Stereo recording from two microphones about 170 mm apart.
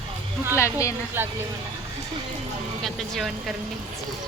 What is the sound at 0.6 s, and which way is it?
Speech, 15° left (ahead or behind).